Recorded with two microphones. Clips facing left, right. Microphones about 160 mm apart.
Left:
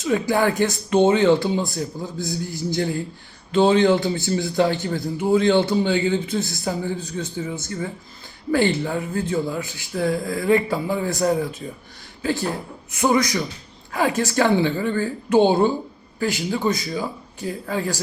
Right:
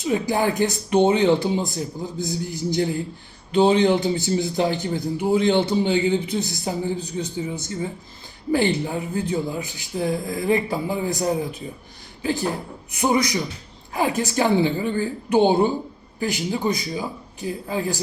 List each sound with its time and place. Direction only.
0.0 s a man's voice: 15° right (ahead or behind)